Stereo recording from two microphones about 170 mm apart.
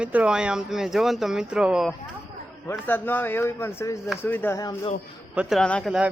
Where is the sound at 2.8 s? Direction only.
10° left (ahead or behind).